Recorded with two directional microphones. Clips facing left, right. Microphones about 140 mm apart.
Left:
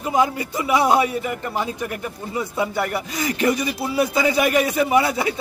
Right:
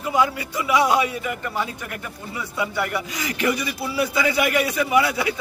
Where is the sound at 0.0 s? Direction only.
25° left (ahead or behind).